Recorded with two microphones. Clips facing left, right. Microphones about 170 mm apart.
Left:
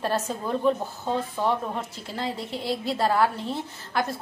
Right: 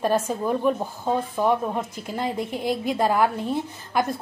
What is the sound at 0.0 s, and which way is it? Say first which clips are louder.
A woman's voice: right 5 dB; 15° right (ahead or behind).